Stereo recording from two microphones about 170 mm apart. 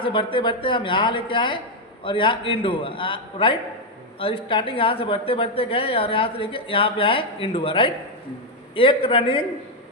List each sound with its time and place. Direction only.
0.0 s a woman's voice: 30° left (ahead or behind)